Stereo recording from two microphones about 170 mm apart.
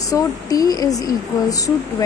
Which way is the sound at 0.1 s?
20° left (ahead or behind).